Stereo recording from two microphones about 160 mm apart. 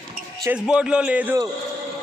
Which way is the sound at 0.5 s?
5° right (ahead or behind).